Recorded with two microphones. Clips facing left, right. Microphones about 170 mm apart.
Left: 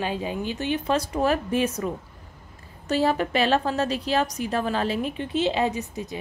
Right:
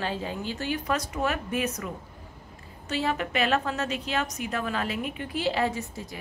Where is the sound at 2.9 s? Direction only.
35° left (ahead or behind).